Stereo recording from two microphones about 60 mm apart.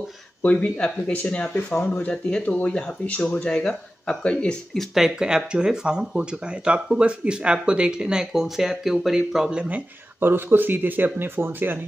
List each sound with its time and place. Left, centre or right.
0.4 s speech: left
4.7 s speech: centre; by 9.8 s right
10.2 s speech: right